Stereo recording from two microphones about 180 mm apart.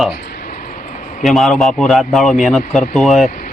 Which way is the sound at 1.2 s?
Centre (ahead or behind).